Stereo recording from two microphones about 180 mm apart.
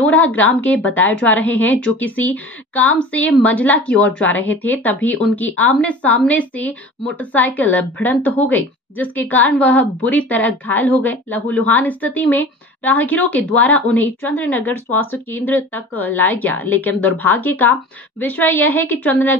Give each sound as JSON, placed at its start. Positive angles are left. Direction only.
{"t": 0.0, "sound": "a woman's voice", "side_deg": 10}